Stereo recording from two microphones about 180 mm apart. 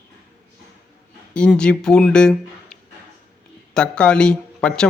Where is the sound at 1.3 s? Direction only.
5° left (ahead or behind).